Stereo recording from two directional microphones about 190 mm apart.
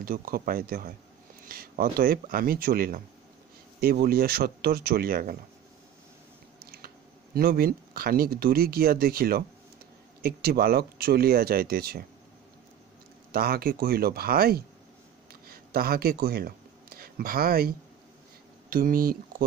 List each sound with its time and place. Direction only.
0.0 s speech: 50° right (ahead or behind)
7.3 s speech: 50° right (ahead or behind)
13.3 s speech: 55° right (ahead or behind)
15.4 s a sound: 50° right (ahead or behind)
18.7 s speech: 50° right (ahead or behind)